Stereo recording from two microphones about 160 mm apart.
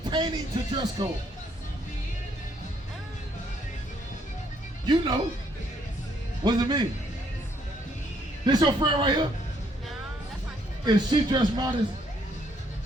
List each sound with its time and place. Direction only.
0.1 s speech: 30° right (ahead or behind)
4.9 s speech: 25° right (ahead or behind)
6.4 s speech: 25° right (ahead or behind)
8.4 s speech: 30° right (ahead or behind)
10.8 s speech: 25° right (ahead or behind)